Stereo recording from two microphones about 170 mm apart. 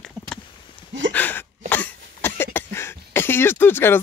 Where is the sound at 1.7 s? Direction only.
10° left (ahead or behind).